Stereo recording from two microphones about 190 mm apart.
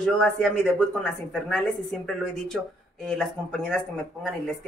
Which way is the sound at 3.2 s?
5° left (ahead or behind).